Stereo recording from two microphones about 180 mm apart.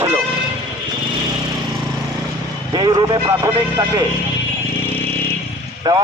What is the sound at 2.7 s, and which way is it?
Speech, 25° right (ahead or behind).